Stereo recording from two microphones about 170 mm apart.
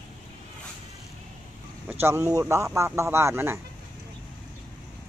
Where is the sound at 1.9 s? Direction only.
15° right (ahead or behind).